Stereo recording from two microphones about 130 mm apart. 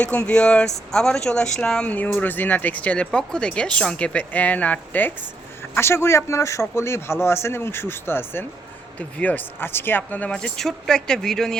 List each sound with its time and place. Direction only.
0.3 s speech: 10° left (ahead or behind)